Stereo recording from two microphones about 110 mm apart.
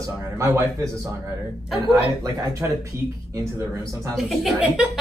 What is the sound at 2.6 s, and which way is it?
Speech, 30° right (ahead or behind).